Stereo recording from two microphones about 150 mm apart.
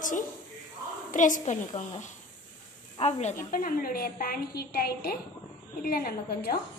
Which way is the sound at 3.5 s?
75° left (ahead or behind).